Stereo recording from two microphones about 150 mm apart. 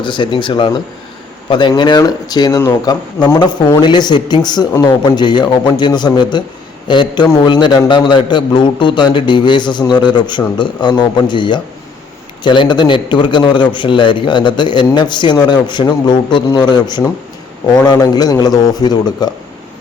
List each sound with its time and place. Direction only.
0.0 s a man's voice: 30° left (ahead or behind)